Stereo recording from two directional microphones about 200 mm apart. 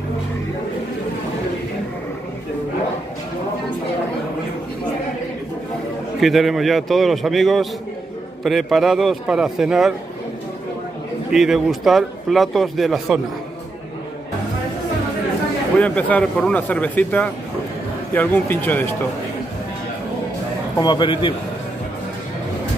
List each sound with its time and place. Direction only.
6.2 s a man's voice: centre (ahead or behind)
11.3 s a man's voice: centre (ahead or behind)
15.8 s speech: 5° left (ahead or behind)
20.7 s a man's voice: 20° left (ahead or behind)